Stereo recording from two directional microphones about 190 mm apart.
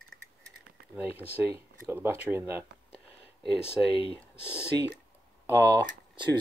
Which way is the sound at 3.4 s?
30° left (ahead or behind).